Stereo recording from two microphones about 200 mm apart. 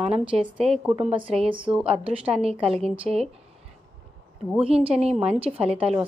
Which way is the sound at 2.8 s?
Centre (ahead or behind).